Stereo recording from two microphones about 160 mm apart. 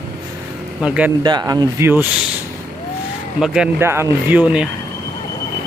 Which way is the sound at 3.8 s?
15° right (ahead or behind).